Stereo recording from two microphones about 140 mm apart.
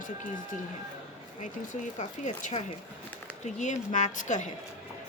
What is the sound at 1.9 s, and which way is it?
A woman's voice, 60° left (ahead or behind).